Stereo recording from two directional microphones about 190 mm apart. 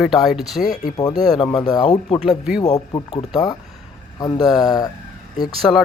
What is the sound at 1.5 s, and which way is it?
A man's voice, 20° left (ahead or behind).